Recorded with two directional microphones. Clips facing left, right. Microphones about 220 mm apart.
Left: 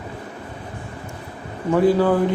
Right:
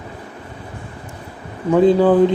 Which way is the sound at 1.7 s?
20° right (ahead or behind).